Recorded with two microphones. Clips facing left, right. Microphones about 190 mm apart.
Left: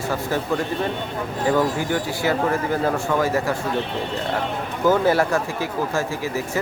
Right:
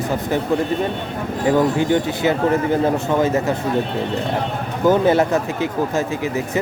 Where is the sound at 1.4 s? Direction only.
20° right (ahead or behind).